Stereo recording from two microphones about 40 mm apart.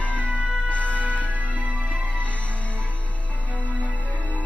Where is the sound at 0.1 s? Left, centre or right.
Right.